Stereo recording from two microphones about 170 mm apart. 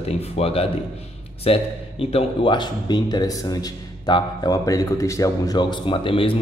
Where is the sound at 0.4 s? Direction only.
35° left (ahead or behind).